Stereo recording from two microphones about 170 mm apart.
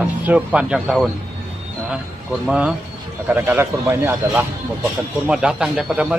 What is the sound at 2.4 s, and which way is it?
A man's voice, 5° right (ahead or behind).